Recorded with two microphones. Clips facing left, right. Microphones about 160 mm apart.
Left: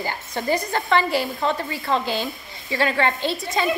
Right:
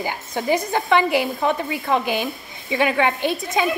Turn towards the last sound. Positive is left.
turn(degrees=-15)  # may be behind; listen again after turning